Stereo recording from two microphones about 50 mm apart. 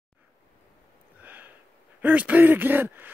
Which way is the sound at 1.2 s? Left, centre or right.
Right.